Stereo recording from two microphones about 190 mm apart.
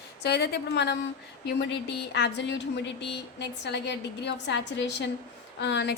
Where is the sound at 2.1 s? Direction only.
65° left (ahead or behind).